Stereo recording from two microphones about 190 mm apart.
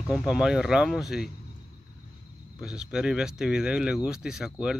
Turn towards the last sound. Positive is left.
turn(degrees=-5)  # may be behind; listen again after turning